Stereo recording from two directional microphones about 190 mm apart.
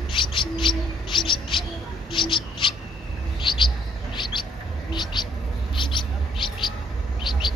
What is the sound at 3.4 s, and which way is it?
Chirp, 25° left (ahead or behind).